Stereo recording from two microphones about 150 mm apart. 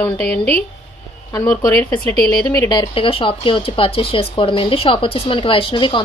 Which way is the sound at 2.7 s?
35° left (ahead or behind).